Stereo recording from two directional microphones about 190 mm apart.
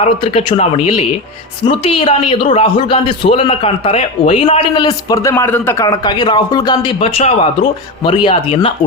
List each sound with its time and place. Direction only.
0.0 s a man's voice: 30° left (ahead or behind)